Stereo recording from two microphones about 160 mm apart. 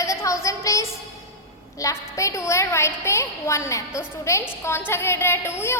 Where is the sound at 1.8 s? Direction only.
20° left (ahead or behind).